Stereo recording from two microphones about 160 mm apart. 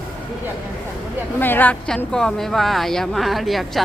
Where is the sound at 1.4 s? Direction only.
10° left (ahead or behind).